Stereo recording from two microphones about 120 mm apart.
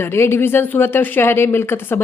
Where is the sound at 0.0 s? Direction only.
20° left (ahead or behind).